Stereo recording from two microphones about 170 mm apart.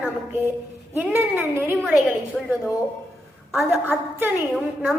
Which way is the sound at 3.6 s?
10° right (ahead or behind).